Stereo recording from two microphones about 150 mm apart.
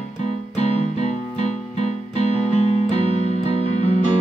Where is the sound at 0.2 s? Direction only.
50° left (ahead or behind).